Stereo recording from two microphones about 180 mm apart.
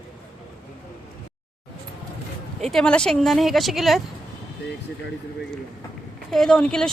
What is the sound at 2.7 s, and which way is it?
Speech, 5° left (ahead or behind).